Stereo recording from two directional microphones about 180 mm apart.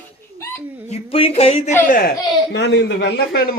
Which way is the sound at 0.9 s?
35° left (ahead or behind).